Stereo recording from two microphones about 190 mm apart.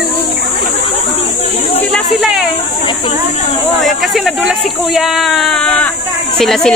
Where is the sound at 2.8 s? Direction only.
25° left (ahead or behind).